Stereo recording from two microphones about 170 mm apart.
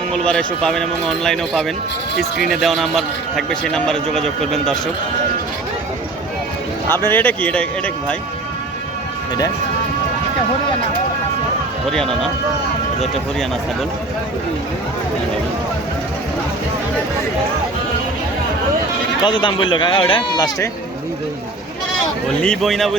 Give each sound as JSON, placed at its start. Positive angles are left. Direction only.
{"t": 0.1, "sound": "a man's voice", "side_deg": 5}
{"t": 6.9, "sound": "a man's voice", "side_deg": 10}
{"t": 11.9, "sound": "a man's voice", "side_deg": 0}
{"t": 19.2, "sound": "speech", "side_deg": 25}
{"t": 22.4, "sound": "a man's voice", "side_deg": 0}